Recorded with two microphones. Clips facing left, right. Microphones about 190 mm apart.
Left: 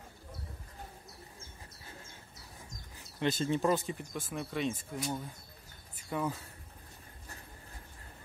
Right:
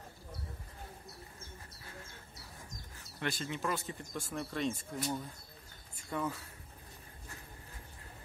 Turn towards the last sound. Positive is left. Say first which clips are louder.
# left 2 dB
turn(degrees=10)  # may be behind; listen again after turning